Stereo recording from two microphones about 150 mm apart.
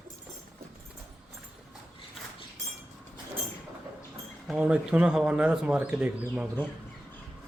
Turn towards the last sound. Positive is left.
turn(degrees=-10)  # may be behind; listen again after turning